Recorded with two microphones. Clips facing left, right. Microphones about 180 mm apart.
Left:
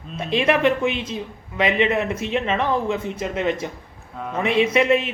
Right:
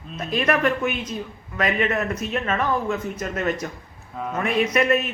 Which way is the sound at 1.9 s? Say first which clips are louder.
Left 2 dB; 15° left (ahead or behind).